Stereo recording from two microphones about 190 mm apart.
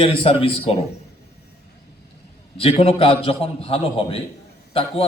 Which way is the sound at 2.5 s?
30° left (ahead or behind).